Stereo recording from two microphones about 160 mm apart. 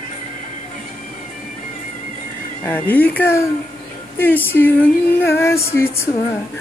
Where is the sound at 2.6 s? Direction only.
10° left (ahead or behind).